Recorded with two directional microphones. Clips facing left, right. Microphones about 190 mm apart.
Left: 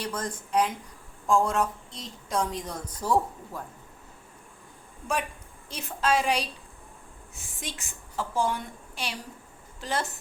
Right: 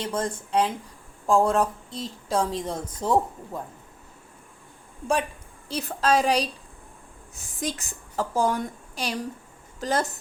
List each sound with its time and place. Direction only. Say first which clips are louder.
0.0 s a woman's voice: right 5 dB; 25° right (ahead or behind)
5.6 s a woman's voice: right 3 dB; 35° right (ahead or behind)